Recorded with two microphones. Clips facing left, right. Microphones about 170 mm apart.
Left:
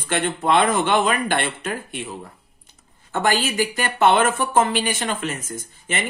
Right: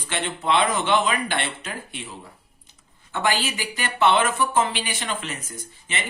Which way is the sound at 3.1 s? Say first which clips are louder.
Left 4 dB; 45° left (ahead or behind).